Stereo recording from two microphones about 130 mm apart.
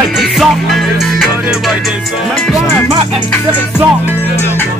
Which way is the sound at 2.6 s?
20° left (ahead or behind).